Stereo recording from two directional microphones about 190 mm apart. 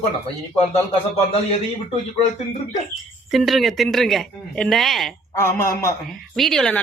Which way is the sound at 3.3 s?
Centre (ahead or behind).